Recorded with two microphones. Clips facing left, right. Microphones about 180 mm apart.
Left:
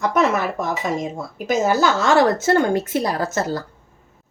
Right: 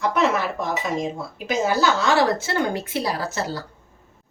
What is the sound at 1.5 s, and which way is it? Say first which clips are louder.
A woman's voice: left 3 dB; 45° left (ahead or behind).